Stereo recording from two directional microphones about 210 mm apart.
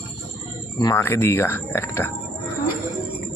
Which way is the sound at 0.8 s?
15° left (ahead or behind).